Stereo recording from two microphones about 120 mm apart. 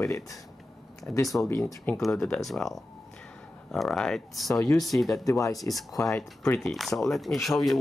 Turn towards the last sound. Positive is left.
turn(degrees=0)  # may be behind; listen again after turning